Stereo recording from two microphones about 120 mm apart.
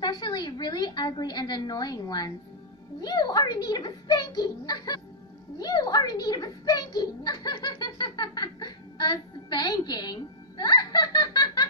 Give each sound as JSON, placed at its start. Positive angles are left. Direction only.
{"t": 0.0, "sound": "a woman's voice", "side_deg": 35}